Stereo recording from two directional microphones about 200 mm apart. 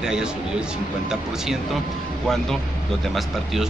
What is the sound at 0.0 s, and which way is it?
Speech, 5° right (ahead or behind).